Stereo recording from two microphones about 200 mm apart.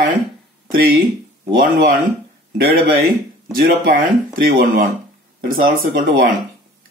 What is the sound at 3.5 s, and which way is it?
Speech, 45° right (ahead or behind).